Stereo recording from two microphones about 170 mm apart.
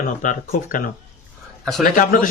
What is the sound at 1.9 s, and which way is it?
Speech, 50° left (ahead or behind).